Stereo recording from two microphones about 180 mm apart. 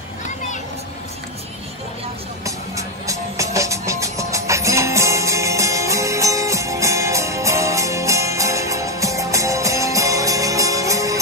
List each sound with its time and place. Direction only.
2.4 s music: 20° right (ahead or behind)